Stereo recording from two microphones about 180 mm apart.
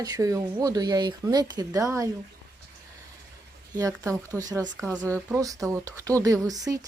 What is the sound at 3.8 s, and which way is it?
Speech, 15° right (ahead or behind).